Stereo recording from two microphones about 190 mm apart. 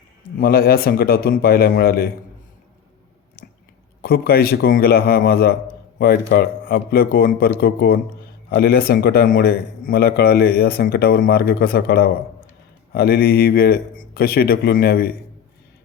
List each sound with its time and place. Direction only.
0.3 s a man's voice: 50° left (ahead or behind)
4.0 s a man's voice: 55° left (ahead or behind)